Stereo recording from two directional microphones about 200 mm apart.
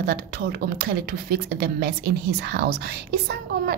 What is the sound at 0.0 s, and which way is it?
Speech, 50° right (ahead or behind).